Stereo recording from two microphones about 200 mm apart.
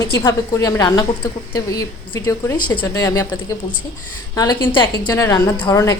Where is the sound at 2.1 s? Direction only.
15° left (ahead or behind).